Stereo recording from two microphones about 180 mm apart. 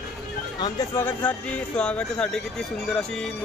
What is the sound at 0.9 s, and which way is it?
Speech, 10° left (ahead or behind).